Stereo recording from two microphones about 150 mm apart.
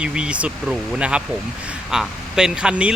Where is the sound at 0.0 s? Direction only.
5° right (ahead or behind).